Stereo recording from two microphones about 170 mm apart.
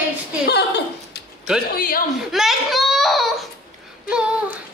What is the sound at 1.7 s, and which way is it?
Speech, 55° left (ahead or behind).